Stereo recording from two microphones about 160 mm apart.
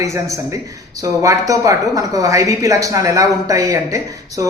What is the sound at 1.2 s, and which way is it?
Speech, 20° right (ahead or behind).